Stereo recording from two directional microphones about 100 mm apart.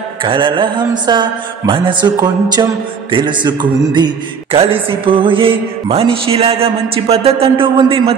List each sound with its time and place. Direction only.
0.2 s mantra: 55° right (ahead or behind)
4.5 s music: 65° right (ahead or behind)